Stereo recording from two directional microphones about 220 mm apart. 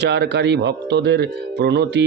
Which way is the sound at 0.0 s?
50° right (ahead or behind).